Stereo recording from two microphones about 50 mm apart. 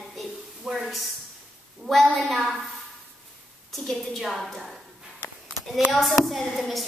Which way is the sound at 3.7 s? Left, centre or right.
Centre.